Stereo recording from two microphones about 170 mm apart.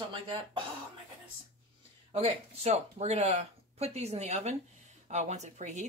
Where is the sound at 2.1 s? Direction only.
35° right (ahead or behind).